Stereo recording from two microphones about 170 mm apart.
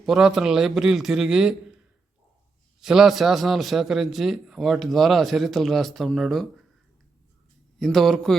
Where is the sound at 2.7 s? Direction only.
5° right (ahead or behind).